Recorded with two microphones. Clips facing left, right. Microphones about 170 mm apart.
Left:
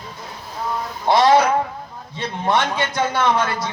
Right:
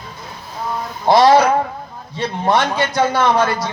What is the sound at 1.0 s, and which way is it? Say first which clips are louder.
A man's voice: right 3 dB; 40° right (ahead or behind).